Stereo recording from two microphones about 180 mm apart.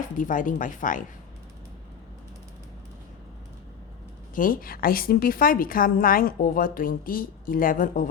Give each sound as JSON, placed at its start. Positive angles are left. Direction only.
{"t": 0.2, "sound": "a woman's voice", "side_deg": 50}
{"t": 4.4, "sound": "a woman's voice", "side_deg": 50}